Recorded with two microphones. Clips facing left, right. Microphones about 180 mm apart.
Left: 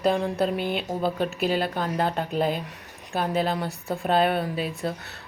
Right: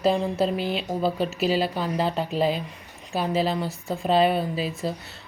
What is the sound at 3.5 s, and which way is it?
A woman's voice, centre (ahead or behind).